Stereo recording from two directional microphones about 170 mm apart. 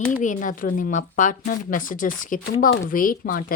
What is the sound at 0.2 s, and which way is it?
A woman's voice, 50° left (ahead or behind).